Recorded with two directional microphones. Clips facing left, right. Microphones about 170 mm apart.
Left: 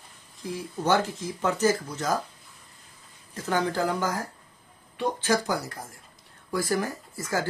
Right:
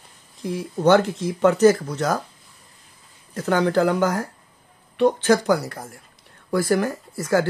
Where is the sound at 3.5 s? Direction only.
70° right (ahead or behind).